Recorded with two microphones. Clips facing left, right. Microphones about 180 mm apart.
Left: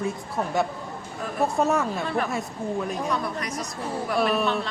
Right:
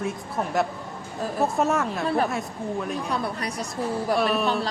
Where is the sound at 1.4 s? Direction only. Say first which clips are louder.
Left 1 dB; centre (ahead or behind).